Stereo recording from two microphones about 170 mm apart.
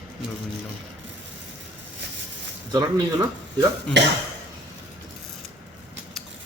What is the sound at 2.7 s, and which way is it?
Speech, 20° right (ahead or behind).